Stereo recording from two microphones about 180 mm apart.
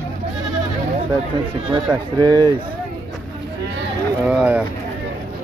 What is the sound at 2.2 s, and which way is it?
Speech, 20° right (ahead or behind).